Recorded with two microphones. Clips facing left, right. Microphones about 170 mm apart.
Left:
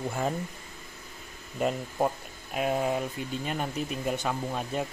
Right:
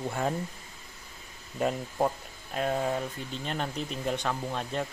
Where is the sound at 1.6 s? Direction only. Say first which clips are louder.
Even; 5° left (ahead or behind).